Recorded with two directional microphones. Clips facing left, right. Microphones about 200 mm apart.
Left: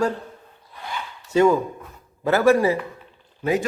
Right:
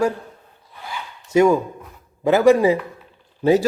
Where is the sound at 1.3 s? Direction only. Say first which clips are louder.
Right 2 dB; 10° right (ahead or behind).